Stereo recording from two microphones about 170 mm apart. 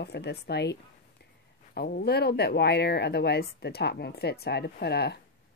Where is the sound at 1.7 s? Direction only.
70° left (ahead or behind).